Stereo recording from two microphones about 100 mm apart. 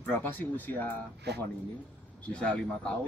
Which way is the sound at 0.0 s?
20° left (ahead or behind).